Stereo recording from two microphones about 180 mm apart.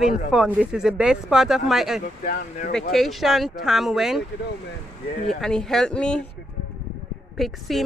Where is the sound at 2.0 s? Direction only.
45° left (ahead or behind).